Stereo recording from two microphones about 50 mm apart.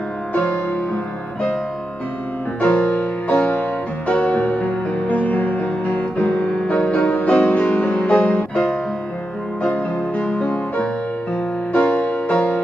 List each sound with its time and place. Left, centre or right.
0.3 s music: left
2.7 s music: left